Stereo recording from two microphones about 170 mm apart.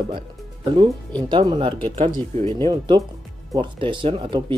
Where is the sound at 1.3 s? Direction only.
30° right (ahead or behind).